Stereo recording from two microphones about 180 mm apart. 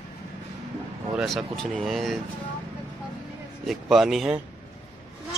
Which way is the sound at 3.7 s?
Centre (ahead or behind).